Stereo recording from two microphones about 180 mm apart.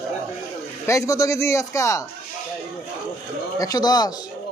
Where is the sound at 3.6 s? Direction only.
20° left (ahead or behind).